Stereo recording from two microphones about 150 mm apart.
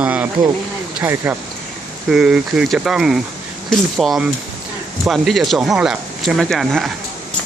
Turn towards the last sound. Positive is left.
turn(degrees=0)  # may be behind; listen again after turning